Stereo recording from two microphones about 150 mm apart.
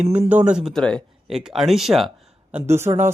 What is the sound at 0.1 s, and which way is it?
Speech, 10° right (ahead or behind).